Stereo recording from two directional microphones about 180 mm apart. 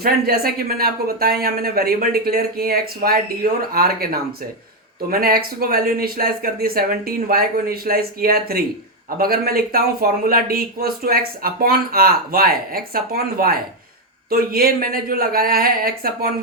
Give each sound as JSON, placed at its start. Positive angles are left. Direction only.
{"t": 0.0, "sound": "speech", "side_deg": -55}